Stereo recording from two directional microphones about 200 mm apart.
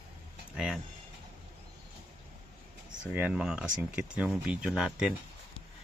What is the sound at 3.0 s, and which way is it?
Speech, 5° right (ahead or behind).